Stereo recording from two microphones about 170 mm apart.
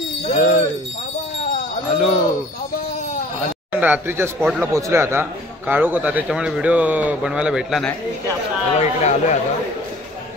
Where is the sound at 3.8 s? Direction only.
10° right (ahead or behind).